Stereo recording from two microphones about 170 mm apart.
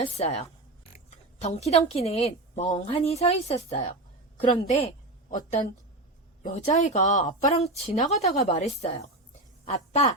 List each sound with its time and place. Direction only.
0.0 s a woman's voice: 40° left (ahead or behind)